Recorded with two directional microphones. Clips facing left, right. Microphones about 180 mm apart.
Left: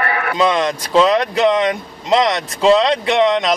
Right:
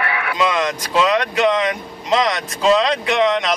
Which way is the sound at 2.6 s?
30° left (ahead or behind).